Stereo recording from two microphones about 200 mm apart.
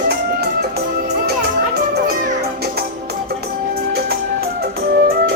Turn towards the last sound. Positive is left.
turn(degrees=-50)  # may be behind; listen again after turning